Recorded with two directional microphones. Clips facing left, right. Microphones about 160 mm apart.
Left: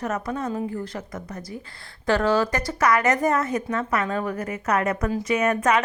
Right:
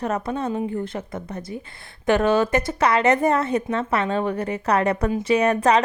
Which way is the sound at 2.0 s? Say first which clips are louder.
Right 2 dB; 20° right (ahead or behind).